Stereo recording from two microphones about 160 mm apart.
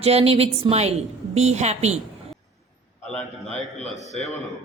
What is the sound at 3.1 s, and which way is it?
Speech, 5° left (ahead or behind).